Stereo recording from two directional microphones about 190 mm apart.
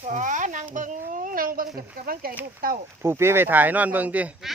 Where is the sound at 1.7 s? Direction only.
50° right (ahead or behind).